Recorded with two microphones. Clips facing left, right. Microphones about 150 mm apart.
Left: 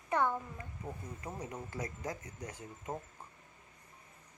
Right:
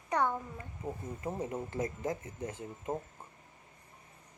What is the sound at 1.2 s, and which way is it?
Speech, 25° right (ahead or behind).